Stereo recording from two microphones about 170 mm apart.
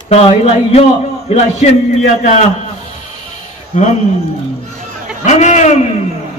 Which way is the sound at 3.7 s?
45° left (ahead or behind).